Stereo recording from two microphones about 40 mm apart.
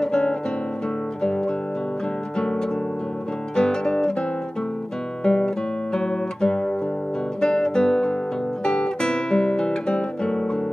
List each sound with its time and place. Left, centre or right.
0.0 s guitar: centre
1.2 s music: centre
3.5 s music: centre
5.2 s guitar: left